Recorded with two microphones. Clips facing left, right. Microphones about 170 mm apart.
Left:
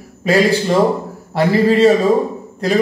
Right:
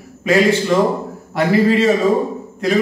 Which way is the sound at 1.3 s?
35° left (ahead or behind).